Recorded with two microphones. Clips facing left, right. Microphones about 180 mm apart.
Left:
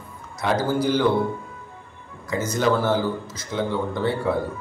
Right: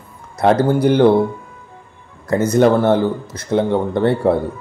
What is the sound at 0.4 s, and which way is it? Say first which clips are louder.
Speech: right 8 dB; 60° right (ahead or behind).